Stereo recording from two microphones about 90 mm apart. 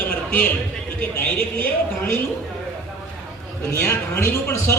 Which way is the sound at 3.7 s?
30° left (ahead or behind).